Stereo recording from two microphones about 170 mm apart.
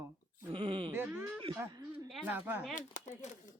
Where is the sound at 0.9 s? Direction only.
10° right (ahead or behind).